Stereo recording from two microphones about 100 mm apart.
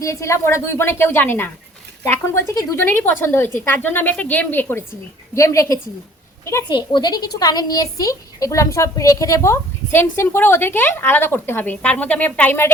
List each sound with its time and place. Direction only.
0.0 s a woman's voice: 30° left (ahead or behind)
5.3 s a woman's voice: 30° left (ahead or behind)
6.7 s a woman's voice: 50° left (ahead or behind); by 12.7 s 20° left (ahead or behind)